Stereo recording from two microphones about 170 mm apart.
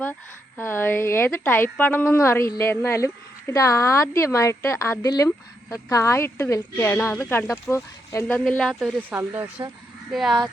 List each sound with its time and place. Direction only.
0.0 s a sound: 10° left (ahead or behind)
1.7 s a woman's voice: 10° left (ahead or behind)
8.4 s speech: 5° left (ahead or behind); by 9.5 s 15° right (ahead or behind)
10.1 s speech: centre (ahead or behind)